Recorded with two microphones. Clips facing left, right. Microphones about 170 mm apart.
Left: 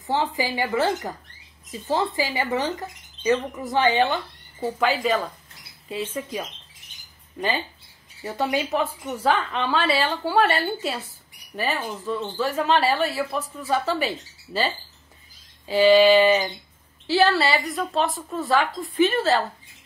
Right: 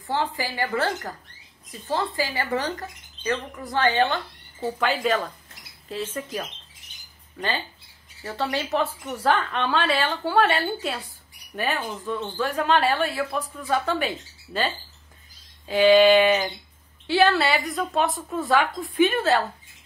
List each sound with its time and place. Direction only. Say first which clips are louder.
0.0 s speech: left 2 dB; 20° left (ahead or behind)
4.6 s a woman's voice: left 2 dB; 5° left (ahead or behind)